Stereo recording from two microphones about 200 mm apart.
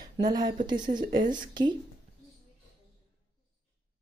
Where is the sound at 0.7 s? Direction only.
45° right (ahead or behind).